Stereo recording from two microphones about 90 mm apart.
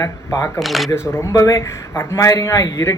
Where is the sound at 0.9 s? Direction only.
30° left (ahead or behind).